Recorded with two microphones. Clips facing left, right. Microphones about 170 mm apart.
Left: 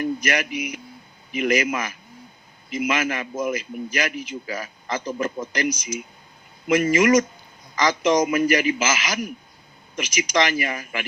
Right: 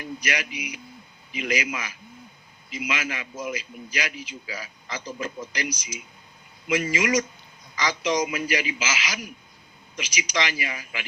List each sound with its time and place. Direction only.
0.0 s a man's voice: 50° left (ahead or behind)